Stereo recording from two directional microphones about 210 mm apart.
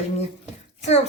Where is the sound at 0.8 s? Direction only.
30° left (ahead or behind).